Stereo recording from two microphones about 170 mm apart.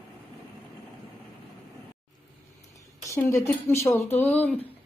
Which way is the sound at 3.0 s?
15° left (ahead or behind).